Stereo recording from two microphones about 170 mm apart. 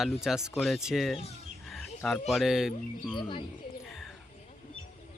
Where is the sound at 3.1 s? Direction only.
30° left (ahead or behind).